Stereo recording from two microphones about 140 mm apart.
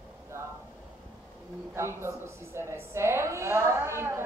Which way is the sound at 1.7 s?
20° right (ahead or behind).